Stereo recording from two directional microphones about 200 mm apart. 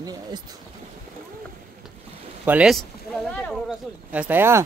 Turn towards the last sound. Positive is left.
turn(degrees=-10)  # may be behind; listen again after turning